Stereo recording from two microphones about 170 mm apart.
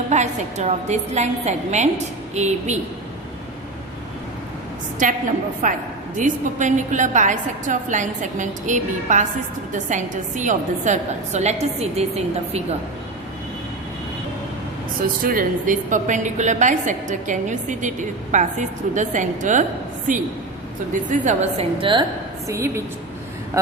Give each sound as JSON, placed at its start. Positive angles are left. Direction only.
{"t": 0.1, "sound": "a woman's voice", "side_deg": -45}
{"t": 5.6, "sound": "a woman's voice", "side_deg": -50}
{"t": 15.0, "sound": "a woman's voice", "side_deg": -55}
{"t": 21.8, "sound": "a woman's voice", "side_deg": -30}
{"t": 22.4, "sound": "a woman's voice", "side_deg": -15}